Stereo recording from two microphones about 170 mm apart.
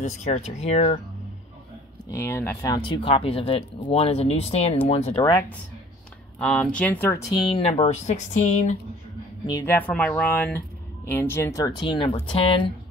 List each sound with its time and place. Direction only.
0.0 s speech: 45° left (ahead or behind)
2.0 s speech: 15° left (ahead or behind); by 5.3 s 35° left (ahead or behind)
6.4 s speech: 5° left (ahead or behind)
7.6 s speech: 40° left (ahead or behind)
9.8 s speech: 10° left (ahead or behind); by 12.7 s 30° left (ahead or behind)